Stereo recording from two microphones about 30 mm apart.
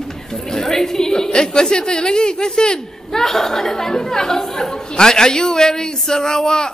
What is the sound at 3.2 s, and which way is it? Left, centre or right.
Speech, centre.